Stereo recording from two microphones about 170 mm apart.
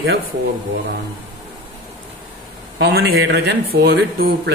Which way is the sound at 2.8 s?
85° right.